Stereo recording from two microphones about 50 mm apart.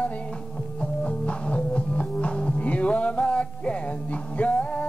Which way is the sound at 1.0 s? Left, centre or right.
Left.